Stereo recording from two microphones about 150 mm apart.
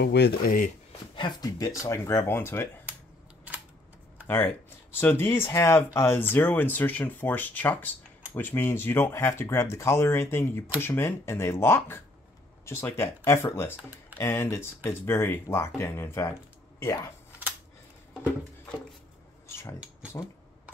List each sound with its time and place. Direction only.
0.0 s speech: 85° left
1.4 s speech: 20° left (ahead or behind)
5.0 s speech: 15° left (ahead or behind)